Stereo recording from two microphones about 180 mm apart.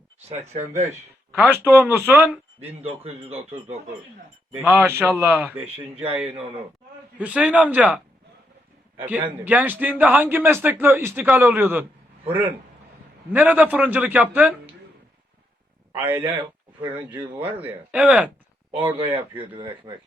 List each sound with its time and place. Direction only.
1.4 s speech: 10° right (ahead or behind)
2.6 s a man's voice: 35° right (ahead or behind)
4.6 s speech: 10° right (ahead or behind)
5.3 s a man's voice: centre (ahead or behind)
7.2 s speech: 5° right (ahead or behind)
9.4 s speech: 10° right (ahead or behind)
13.3 s speech: 10° right (ahead or behind)
16.0 s speech: 10° right (ahead or behind)
18.8 s a man's voice: 30° right (ahead or behind)